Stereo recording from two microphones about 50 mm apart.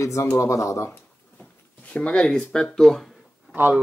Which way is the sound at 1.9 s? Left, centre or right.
Left.